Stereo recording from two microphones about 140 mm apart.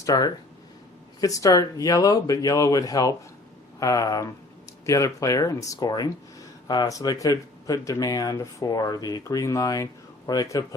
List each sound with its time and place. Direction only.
0.0 s speech: 25° left (ahead or behind)